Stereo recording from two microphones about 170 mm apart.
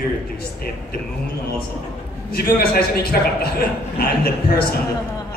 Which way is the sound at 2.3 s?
65° left (ahead or behind).